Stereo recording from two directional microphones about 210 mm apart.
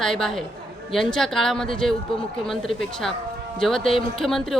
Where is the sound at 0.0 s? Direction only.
Centre (ahead or behind).